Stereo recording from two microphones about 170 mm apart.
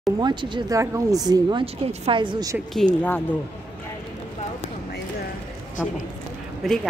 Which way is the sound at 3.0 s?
10° left (ahead or behind).